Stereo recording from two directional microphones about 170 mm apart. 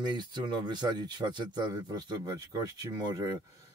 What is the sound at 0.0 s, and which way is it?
Speech, 25° right (ahead or behind).